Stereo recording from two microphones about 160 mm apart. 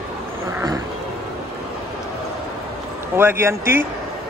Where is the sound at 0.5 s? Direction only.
20° right (ahead or behind).